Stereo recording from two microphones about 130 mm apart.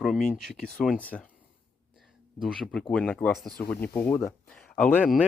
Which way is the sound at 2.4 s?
Centre (ahead or behind).